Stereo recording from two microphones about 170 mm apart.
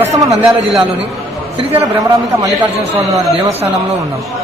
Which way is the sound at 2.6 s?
15° right (ahead or behind).